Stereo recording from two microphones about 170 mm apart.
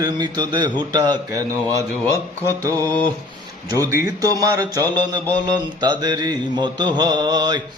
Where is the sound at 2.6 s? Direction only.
20° right (ahead or behind).